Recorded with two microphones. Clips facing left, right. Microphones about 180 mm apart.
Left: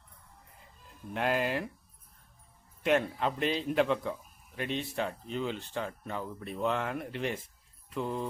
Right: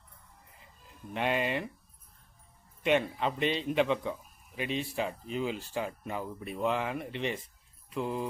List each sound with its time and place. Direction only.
0.9 s speech: centre (ahead or behind)
2.8 s a man's voice: centre (ahead or behind)